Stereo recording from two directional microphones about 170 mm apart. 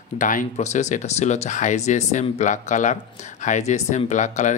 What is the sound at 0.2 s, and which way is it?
Speech, 50° left (ahead or behind).